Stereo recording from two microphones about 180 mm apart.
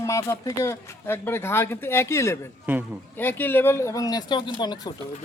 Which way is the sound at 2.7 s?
10° right (ahead or behind).